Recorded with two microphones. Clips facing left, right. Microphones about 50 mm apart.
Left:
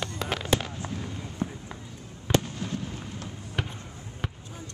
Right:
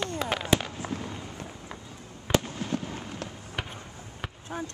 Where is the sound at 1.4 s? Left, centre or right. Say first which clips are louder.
Left 9 dB; left.